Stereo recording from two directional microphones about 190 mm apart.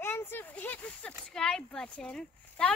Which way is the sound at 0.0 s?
10° left (ahead or behind).